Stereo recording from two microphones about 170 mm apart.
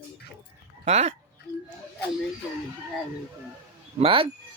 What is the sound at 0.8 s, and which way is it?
Speech, 40° right (ahead or behind).